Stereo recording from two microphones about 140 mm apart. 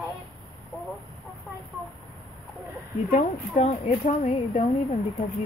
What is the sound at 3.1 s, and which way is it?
Speech, 55° left (ahead or behind).